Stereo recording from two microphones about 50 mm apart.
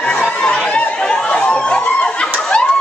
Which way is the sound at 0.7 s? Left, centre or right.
Left.